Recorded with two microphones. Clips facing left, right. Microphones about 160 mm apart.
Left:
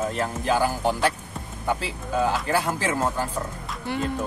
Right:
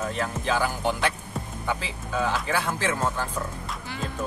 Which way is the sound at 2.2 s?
5° left (ahead or behind).